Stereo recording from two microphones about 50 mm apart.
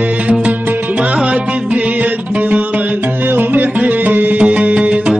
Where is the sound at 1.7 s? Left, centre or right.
Right.